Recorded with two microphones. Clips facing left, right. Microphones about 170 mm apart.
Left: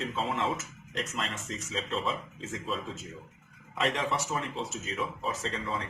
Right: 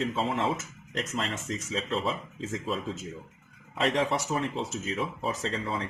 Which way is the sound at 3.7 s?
30° right (ahead or behind).